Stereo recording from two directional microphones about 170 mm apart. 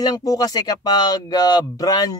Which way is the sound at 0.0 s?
20° left (ahead or behind).